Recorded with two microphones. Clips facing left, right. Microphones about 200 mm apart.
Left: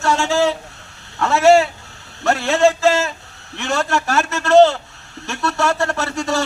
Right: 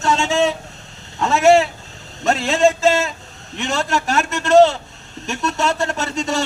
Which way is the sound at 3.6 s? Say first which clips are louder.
Left 1 dB; 20° right (ahead or behind).